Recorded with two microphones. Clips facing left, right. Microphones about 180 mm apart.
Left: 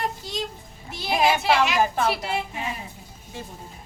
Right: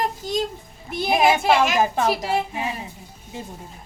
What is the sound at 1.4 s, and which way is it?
Speech, 50° right (ahead or behind).